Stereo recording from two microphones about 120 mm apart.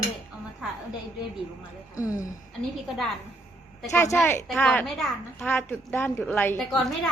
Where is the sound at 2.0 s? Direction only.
30° left (ahead or behind).